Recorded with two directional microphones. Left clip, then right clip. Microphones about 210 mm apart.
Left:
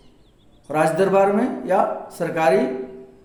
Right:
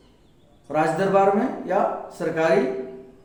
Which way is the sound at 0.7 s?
55° left (ahead or behind).